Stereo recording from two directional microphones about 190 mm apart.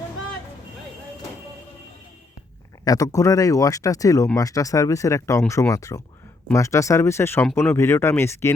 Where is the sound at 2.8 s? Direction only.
20° left (ahead or behind).